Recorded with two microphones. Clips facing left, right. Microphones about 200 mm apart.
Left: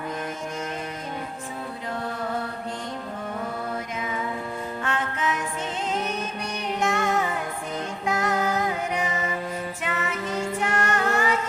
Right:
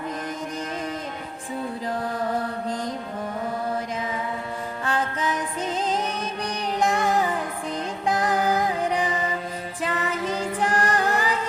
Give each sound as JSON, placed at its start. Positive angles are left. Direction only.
{"t": 4.9, "sound": "music", "side_deg": -35}
{"t": 6.7, "sound": "music", "side_deg": -35}